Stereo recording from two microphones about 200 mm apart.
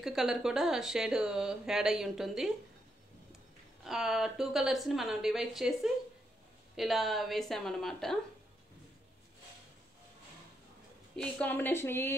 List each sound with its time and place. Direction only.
0.0 s speech: centre (ahead or behind)
3.8 s speech: centre (ahead or behind)
6.8 s speech: centre (ahead or behind)
11.1 s a woman's voice: 5° left (ahead or behind)